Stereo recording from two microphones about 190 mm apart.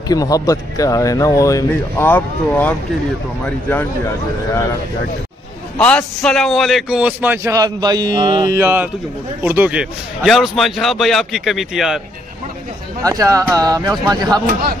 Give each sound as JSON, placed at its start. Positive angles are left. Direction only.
{"t": 0.1, "sound": "speech", "side_deg": 20}
{"t": 5.8, "sound": "a man's voice", "side_deg": 5}
{"t": 8.5, "sound": "a man's voice", "side_deg": -10}
{"t": 13.0, "sound": "a man's voice", "side_deg": -20}
{"t": 14.4, "sound": "a man's voice", "side_deg": -45}